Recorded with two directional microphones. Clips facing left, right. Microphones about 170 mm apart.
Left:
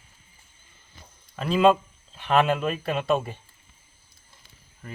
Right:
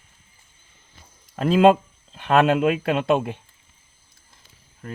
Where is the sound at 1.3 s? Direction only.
45° right (ahead or behind).